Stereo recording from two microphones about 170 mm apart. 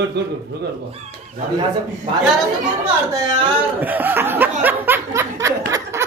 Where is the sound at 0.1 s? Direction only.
75° right (ahead or behind).